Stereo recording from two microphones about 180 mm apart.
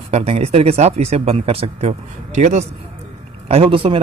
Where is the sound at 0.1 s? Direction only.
35° right (ahead or behind).